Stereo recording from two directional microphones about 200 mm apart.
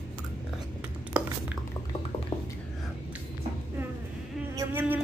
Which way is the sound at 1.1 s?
5° right (ahead or behind).